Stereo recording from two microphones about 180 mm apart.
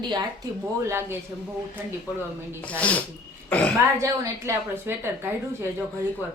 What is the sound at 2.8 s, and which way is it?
Speech, 10° left (ahead or behind).